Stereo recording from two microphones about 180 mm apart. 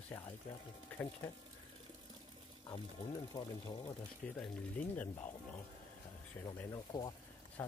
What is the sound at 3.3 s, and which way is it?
Speech, 25° left (ahead or behind).